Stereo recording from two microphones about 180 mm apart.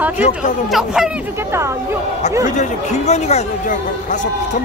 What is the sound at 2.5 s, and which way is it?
Speech, 40° left (ahead or behind).